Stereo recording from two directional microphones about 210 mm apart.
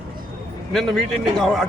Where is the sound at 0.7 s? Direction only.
Centre (ahead or behind).